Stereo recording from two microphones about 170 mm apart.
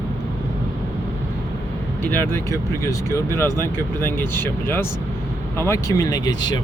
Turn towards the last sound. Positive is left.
turn(degrees=25)  # may be behind; listen again after turning